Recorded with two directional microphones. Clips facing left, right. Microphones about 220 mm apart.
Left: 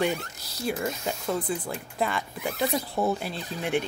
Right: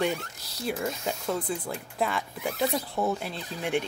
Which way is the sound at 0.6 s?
Centre (ahead or behind).